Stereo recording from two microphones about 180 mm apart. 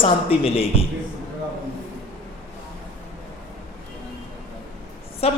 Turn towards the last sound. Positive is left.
turn(degrees=35)  # may be behind; listen again after turning